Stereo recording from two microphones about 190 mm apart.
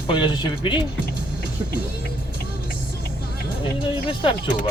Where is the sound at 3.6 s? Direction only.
25° left (ahead or behind).